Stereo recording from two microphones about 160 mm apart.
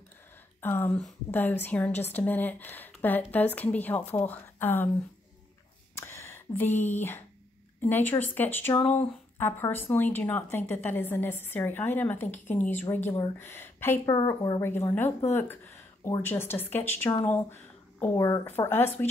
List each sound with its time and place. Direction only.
0.6 s a woman's voice: 15° left (ahead or behind)
5.9 s a sound: 15° left (ahead or behind)
7.8 s a woman's voice: 10° left (ahead or behind)
14.1 s speech: 25° left (ahead or behind)
14.6 s a woman's voice: 15° left (ahead or behind)